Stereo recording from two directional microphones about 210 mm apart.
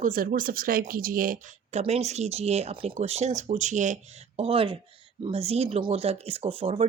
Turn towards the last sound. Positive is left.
turn(degrees=-30)  # may be behind; listen again after turning